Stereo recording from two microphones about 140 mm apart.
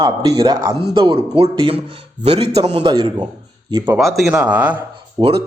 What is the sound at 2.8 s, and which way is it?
Speech, 35° right (ahead or behind).